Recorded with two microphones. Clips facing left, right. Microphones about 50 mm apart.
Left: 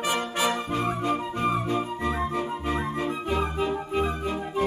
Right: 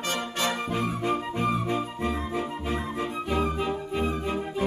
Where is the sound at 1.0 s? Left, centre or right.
Centre.